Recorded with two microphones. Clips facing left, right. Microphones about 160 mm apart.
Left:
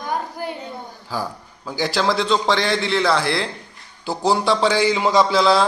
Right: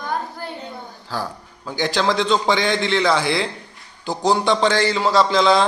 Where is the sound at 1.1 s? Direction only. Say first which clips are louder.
Left 1 dB; 10° left (ahead or behind).